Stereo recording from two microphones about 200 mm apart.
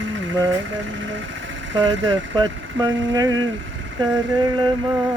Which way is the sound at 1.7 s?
70° right (ahead or behind).